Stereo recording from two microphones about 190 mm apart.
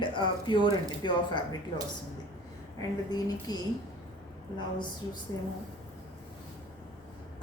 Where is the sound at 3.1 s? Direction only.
20° left (ahead or behind).